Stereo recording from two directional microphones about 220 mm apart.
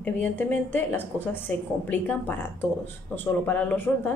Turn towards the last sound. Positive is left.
turn(degrees=10)  # may be behind; listen again after turning